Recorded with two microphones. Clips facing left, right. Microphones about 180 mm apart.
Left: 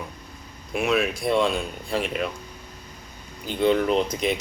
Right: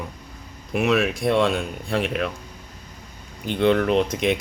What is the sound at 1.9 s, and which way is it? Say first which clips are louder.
Speech: right 2 dB; 60° right (ahead or behind).